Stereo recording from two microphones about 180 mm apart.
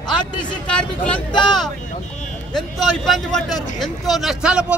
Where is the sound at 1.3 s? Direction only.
Centre (ahead or behind).